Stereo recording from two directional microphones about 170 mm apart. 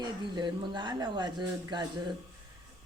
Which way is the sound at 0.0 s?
25° right (ahead or behind).